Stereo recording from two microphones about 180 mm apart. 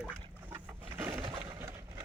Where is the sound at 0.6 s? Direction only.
15° right (ahead or behind).